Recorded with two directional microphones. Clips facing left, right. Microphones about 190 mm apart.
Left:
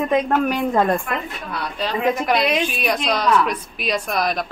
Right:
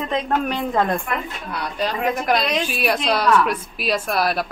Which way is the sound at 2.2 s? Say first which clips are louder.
Left 1 dB; centre (ahead or behind).